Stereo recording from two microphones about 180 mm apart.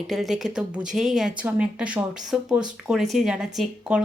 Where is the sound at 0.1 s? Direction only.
Centre (ahead or behind).